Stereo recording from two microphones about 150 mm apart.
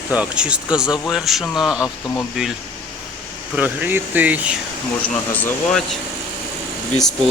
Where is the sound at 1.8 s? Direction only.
20° left (ahead or behind).